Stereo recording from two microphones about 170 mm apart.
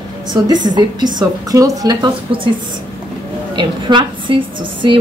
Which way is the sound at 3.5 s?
25° right (ahead or behind).